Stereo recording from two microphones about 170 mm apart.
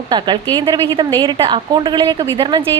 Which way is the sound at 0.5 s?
25° right (ahead or behind).